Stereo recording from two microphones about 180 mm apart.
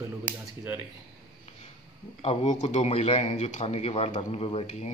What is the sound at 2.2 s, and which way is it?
A man's voice, 35° left (ahead or behind).